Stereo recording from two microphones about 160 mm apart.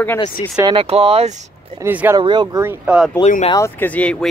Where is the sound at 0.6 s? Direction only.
30° right (ahead or behind).